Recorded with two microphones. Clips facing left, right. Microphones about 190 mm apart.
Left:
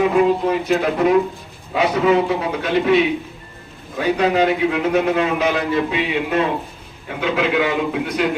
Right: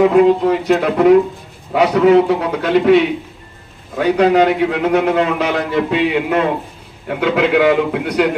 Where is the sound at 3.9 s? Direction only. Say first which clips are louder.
Right 5 dB; 65° right (ahead or behind).